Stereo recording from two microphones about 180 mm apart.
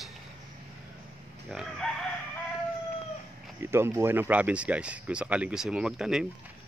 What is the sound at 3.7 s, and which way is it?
Speech, 15° right (ahead or behind).